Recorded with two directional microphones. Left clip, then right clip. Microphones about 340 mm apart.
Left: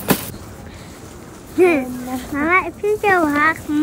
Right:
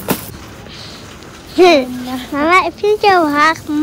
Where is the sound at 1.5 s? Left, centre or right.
Centre.